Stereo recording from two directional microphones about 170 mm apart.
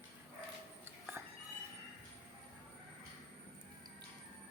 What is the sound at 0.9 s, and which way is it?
Music, 10° right (ahead or behind).